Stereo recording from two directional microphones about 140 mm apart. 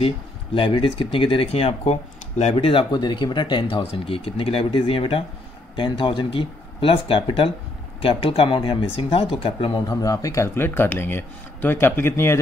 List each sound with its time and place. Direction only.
0.6 s speech: 35° left (ahead or behind)
2.5 s speech: 40° left (ahead or behind); by 12.4 s 15° left (ahead or behind)